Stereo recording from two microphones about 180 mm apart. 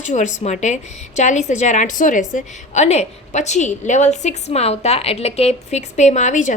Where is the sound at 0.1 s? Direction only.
40° left (ahead or behind).